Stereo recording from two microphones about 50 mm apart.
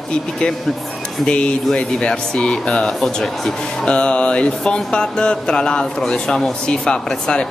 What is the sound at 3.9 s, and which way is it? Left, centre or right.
Speech, left.